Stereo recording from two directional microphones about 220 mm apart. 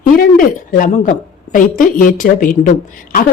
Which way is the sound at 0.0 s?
40° left (ahead or behind).